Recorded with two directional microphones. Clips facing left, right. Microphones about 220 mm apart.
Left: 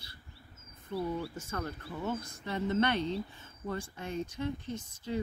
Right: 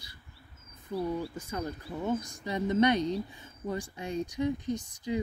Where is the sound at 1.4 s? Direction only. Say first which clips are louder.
Right 3 dB; 15° right (ahead or behind).